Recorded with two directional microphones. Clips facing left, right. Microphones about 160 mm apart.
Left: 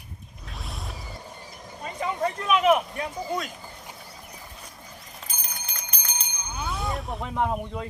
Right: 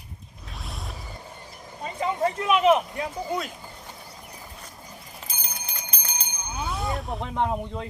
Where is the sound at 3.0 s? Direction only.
5° right (ahead or behind).